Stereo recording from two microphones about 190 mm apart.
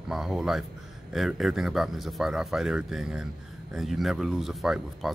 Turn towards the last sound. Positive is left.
turn(degrees=0)  # may be behind; listen again after turning